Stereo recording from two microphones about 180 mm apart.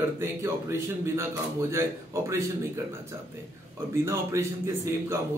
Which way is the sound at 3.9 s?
15° right (ahead or behind).